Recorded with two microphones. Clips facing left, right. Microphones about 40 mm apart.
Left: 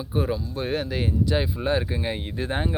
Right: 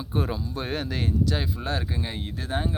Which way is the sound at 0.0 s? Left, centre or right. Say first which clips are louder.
Left 3 dB; centre.